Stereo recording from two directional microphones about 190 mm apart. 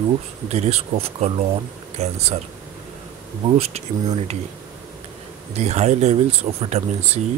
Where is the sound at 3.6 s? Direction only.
35° right (ahead or behind).